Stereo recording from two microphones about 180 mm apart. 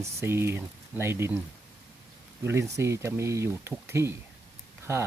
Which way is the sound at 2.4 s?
15° right (ahead or behind).